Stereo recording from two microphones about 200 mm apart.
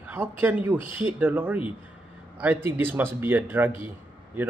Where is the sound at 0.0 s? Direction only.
10° right (ahead or behind).